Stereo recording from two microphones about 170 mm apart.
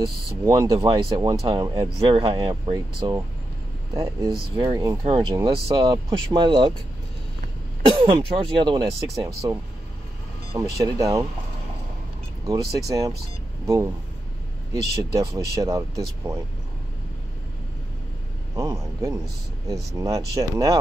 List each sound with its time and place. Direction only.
0.5 s speech: 20° right (ahead or behind)
7.9 s speech: 30° right (ahead or behind)
10.6 s speech: 20° right (ahead or behind)
12.4 s speech: 20° right (ahead or behind)
18.5 s speech: 20° right (ahead or behind)